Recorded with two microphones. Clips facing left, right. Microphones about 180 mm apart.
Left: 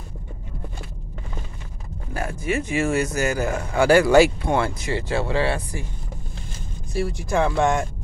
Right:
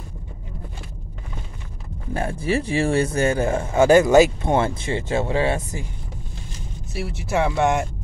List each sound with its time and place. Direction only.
2.1 s speech: 30° right (ahead or behind)
6.9 s speech: 5° right (ahead or behind)